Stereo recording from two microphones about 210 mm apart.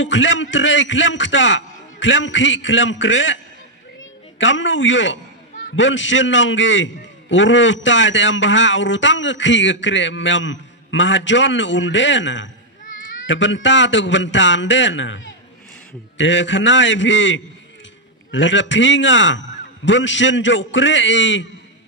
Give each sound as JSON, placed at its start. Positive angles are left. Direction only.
{"t": 0.0, "sound": "a man's voice", "side_deg": 60}